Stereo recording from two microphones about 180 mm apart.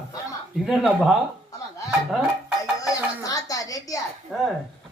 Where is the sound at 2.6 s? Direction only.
20° left (ahead or behind).